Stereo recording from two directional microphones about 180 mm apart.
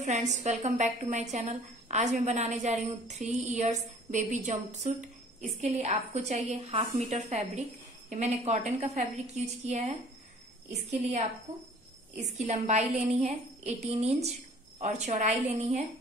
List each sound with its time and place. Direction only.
0.0 s a woman's voice: 40° right (ahead or behind)